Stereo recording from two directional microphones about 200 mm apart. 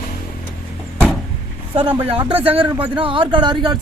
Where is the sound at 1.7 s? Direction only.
25° right (ahead or behind).